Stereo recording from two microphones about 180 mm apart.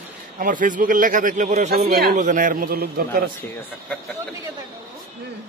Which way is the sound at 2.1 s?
45° right (ahead or behind).